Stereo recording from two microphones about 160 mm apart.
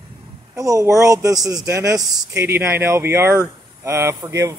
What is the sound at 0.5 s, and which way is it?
Speech, 20° right (ahead or behind).